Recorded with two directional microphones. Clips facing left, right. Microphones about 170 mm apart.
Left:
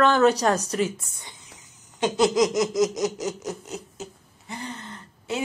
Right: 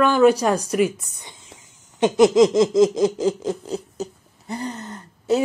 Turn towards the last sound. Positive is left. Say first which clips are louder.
# right 10 dB
turn(degrees=-40)  # may be behind; listen again after turning